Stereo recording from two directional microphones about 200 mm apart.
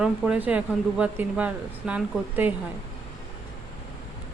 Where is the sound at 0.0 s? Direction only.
5° right (ahead or behind).